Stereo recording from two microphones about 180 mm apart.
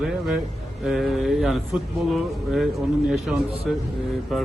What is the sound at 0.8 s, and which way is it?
A man's voice, centre (ahead or behind).